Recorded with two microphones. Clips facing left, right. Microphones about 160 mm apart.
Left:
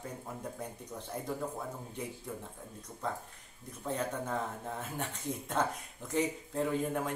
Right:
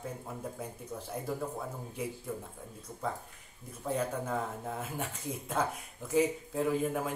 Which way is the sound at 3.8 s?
5° right (ahead or behind).